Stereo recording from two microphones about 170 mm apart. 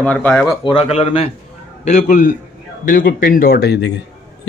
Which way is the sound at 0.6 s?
35° left (ahead or behind).